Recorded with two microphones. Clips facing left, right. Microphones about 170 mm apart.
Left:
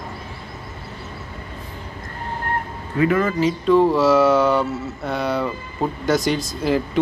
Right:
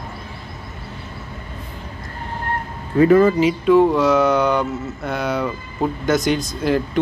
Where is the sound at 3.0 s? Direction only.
35° right (ahead or behind).